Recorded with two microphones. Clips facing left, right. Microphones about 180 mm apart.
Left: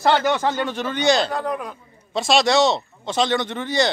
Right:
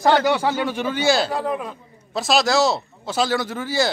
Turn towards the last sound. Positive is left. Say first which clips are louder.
# left 1 dB
turn(degrees=-5)  # may be behind; listen again after turning